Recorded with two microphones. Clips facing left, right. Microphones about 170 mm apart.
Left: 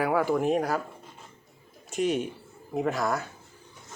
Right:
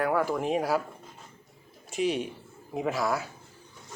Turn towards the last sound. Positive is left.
turn(degrees=0)  # may be behind; listen again after turning